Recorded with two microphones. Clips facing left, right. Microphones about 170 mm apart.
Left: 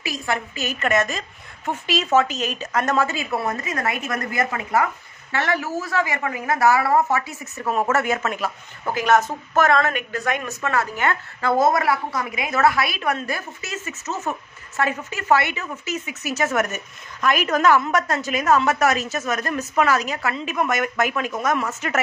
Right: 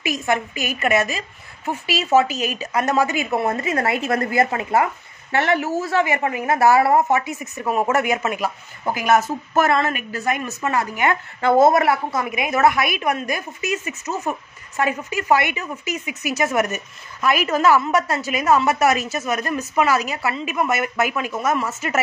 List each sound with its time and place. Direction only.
0.0 s a woman's voice: 20° right (ahead or behind)
11.4 s a woman's voice: 25° right (ahead or behind); by 22.0 s 5° right (ahead or behind)